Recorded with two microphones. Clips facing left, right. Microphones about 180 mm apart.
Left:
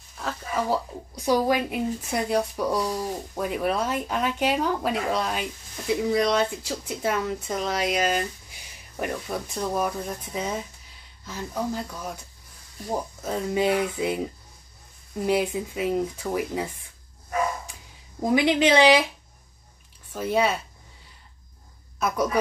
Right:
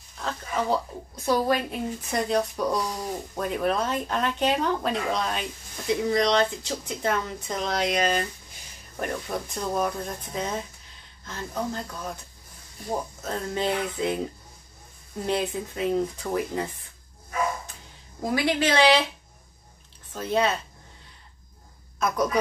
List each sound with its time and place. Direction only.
0.2 s speech: 5° left (ahead or behind)
13.2 s speech: 10° left (ahead or behind)
18.2 s speech: 20° left (ahead or behind)
20.1 s speech: 10° left (ahead or behind)
22.0 s speech: 10° left (ahead or behind)